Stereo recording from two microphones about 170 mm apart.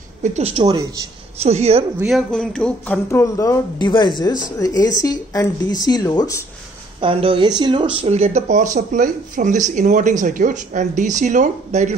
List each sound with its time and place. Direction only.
0.2 s speech: 40° right (ahead or behind)
0.7 s a man's voice: 20° right (ahead or behind)
1.4 s speech: 40° right (ahead or behind)
2.0 s speech: centre (ahead or behind)
3.1 s speech: 15° left (ahead or behind)
7.0 s speech: 30° right (ahead or behind)